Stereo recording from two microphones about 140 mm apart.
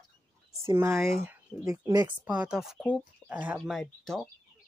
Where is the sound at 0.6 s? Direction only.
20° right (ahead or behind).